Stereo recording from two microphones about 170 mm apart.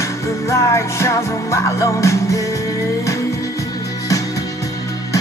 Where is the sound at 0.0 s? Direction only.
15° left (ahead or behind).